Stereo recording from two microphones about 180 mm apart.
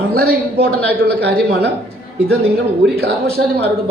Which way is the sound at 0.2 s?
65° right (ahead or behind).